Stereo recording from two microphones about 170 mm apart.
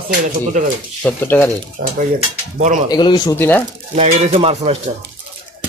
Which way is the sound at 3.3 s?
10° left (ahead or behind).